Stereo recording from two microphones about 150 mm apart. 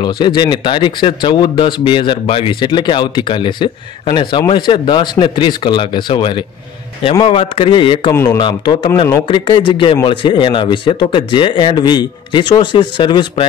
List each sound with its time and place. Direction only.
0.0 s speech: 30° left (ahead or behind)
8.1 s speech: 15° left (ahead or behind)
8.4 s speech: 30° left (ahead or behind)